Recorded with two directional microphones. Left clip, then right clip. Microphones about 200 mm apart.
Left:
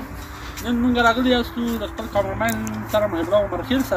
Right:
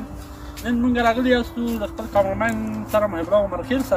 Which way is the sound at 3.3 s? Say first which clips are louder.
Even; 30° right (ahead or behind).